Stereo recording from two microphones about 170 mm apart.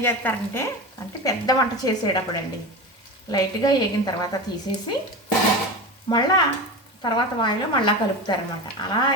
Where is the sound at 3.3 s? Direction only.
20° left (ahead or behind).